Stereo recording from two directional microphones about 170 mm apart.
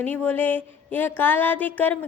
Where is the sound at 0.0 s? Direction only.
10° left (ahead or behind).